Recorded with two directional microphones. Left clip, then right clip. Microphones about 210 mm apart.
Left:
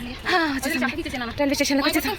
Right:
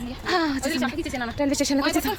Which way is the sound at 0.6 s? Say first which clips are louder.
Left 1 dB; 20° right (ahead or behind).